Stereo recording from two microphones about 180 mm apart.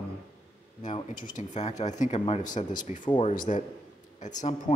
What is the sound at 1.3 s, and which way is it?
Speech, 40° left (ahead or behind).